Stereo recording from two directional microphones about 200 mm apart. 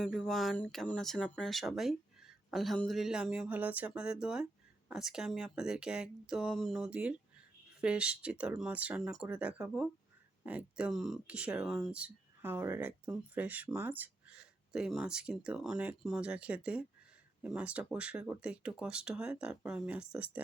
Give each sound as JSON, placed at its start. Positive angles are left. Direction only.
{"t": 0.0, "sound": "speech", "side_deg": 0}